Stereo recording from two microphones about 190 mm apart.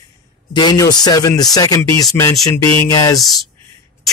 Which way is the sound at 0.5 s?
25° left (ahead or behind).